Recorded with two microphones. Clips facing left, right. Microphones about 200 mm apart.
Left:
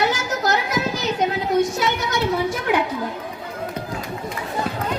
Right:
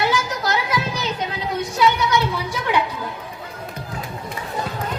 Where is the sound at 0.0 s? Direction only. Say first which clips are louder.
Left 1 dB; 45° left (ahead or behind).